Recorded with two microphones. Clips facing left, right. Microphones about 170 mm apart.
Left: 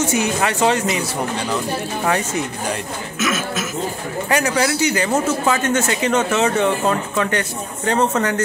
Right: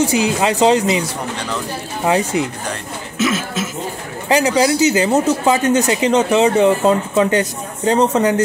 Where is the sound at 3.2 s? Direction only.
30° right (ahead or behind).